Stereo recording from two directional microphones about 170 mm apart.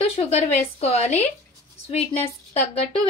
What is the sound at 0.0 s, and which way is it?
A woman's voice, 35° left (ahead or behind).